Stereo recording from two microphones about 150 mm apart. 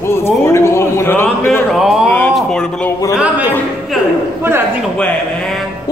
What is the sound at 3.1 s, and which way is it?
A man's voice, 10° right (ahead or behind).